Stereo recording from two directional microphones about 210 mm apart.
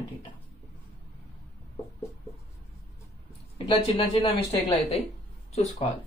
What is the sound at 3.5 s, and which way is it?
Speech, 25° left (ahead or behind).